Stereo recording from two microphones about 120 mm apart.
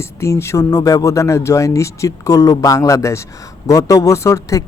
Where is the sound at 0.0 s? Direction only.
25° left (ahead or behind).